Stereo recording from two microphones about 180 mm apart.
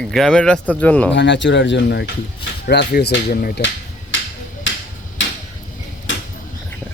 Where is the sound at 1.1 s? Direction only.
80° left.